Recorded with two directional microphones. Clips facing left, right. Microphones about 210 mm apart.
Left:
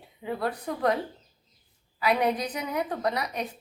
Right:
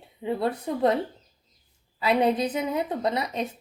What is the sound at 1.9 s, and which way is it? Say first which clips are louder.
A woman's voice: right 3 dB; 25° right (ahead or behind).